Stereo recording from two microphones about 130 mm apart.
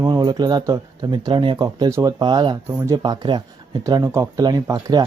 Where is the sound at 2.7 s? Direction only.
20° right (ahead or behind).